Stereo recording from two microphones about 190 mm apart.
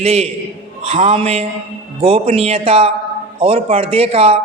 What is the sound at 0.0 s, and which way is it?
A man's voice, 35° right (ahead or behind).